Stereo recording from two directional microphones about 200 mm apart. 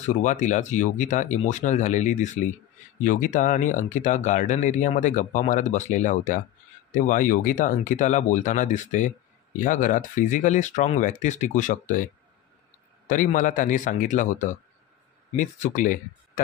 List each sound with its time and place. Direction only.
0.0 s speech: 35° left (ahead or behind)